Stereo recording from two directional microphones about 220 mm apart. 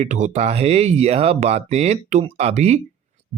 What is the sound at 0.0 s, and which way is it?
Speech, 30° right (ahead or behind).